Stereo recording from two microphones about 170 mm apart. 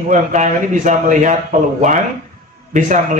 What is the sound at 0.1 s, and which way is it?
A man's voice, 45° right (ahead or behind).